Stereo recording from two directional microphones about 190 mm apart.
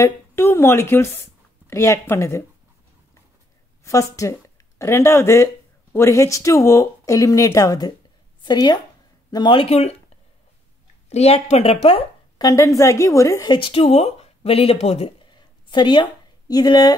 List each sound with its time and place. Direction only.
0.0 s a woman's voice: 10° left (ahead or behind)
3.8 s a woman's voice: 15° left (ahead or behind); by 9.9 s 35° left (ahead or behind)
11.1 s a woman's voice: 35° left (ahead or behind)
12.4 s a woman's voice: 15° left (ahead or behind)